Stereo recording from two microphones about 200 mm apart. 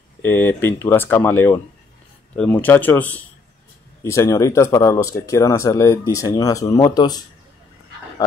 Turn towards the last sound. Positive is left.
turn(degrees=20)  # may be behind; listen again after turning